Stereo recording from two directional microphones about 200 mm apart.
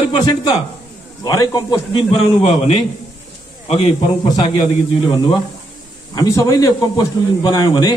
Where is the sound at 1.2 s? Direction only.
20° left (ahead or behind).